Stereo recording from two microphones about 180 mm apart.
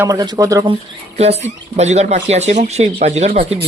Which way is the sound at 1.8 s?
40° right (ahead or behind).